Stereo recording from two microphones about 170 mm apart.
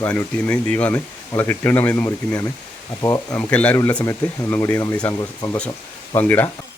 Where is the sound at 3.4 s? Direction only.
10° left (ahead or behind).